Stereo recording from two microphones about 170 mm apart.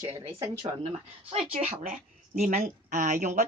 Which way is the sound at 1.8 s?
50° right (ahead or behind).